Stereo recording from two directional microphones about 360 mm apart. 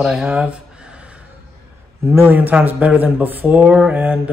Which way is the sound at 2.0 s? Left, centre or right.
Centre.